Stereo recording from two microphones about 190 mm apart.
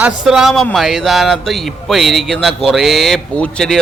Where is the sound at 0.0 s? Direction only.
5° right (ahead or behind).